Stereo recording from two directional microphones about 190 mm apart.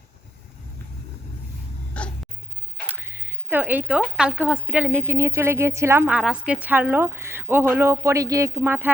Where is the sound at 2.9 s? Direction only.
10° right (ahead or behind).